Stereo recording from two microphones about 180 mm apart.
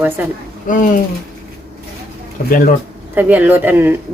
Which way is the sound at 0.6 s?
45° left (ahead or behind).